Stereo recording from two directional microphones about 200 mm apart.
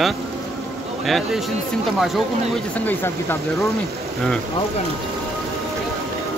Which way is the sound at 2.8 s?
10° left (ahead or behind).